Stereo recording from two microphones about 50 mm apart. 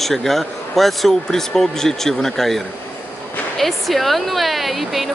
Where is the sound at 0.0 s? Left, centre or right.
Centre.